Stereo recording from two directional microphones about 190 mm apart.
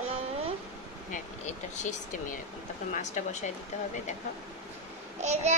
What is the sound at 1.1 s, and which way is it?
Speech, 40° left (ahead or behind).